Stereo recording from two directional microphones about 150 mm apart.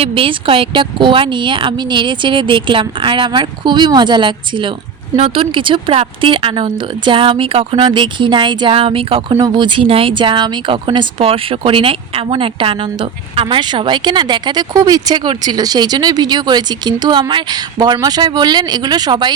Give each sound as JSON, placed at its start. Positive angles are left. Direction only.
{"t": 0.0, "sound": "speech", "side_deg": -35}